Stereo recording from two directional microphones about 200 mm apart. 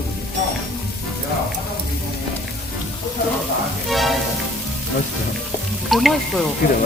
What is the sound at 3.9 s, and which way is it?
Speech, centre (ahead or behind).